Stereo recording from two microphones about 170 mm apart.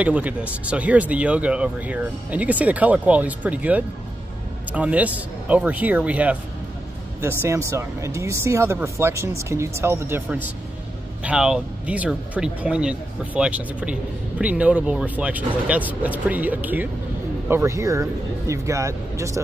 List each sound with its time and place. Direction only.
0.0 s speech: 10° right (ahead or behind)
7.4 s speech: 15° right (ahead or behind)